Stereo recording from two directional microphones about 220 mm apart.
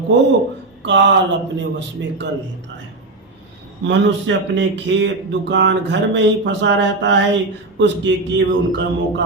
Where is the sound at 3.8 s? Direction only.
55° right (ahead or behind).